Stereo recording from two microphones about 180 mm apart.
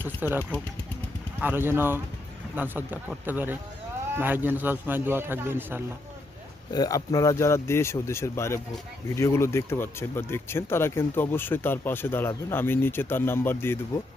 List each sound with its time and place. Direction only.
0.2 s a man's voice: 10° right (ahead or behind)
6.7 s speech: 20° left (ahead or behind)